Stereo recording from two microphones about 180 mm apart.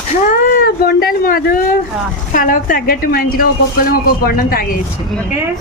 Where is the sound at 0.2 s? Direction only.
55° left (ahead or behind).